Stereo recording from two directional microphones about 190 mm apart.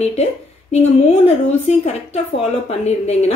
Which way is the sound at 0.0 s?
35° left (ahead or behind).